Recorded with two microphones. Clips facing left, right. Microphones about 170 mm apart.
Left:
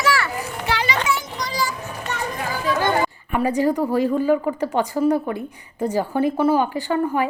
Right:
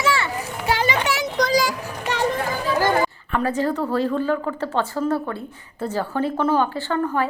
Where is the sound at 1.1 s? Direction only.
75° right (ahead or behind).